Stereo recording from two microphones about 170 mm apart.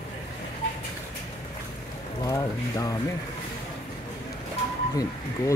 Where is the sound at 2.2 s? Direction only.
20° left (ahead or behind).